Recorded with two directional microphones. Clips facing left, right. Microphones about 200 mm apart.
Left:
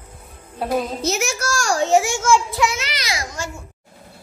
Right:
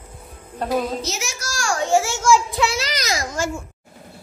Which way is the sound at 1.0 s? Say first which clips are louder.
Left 7 dB; 55° left (ahead or behind).